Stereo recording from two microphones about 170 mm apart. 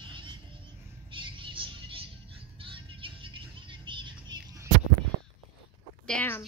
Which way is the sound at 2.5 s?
30° right (ahead or behind).